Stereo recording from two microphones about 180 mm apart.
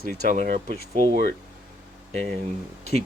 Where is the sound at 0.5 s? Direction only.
30° right (ahead or behind).